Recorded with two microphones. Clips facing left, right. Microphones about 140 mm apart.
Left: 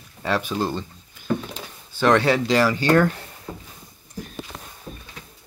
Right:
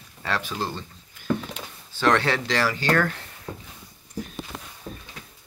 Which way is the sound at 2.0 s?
15° left (ahead or behind).